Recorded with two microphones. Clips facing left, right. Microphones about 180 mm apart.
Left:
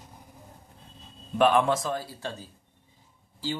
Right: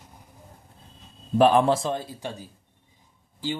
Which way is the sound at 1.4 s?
30° right (ahead or behind).